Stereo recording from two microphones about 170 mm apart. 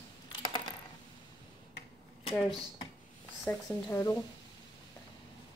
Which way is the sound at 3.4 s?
20° left (ahead or behind).